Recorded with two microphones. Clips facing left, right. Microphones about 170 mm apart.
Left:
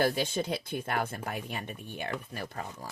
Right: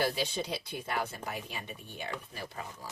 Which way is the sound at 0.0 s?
50° left (ahead or behind).